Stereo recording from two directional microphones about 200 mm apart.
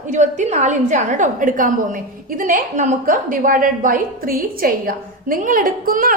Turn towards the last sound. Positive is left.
turn(degrees=-45)  # may be behind; listen again after turning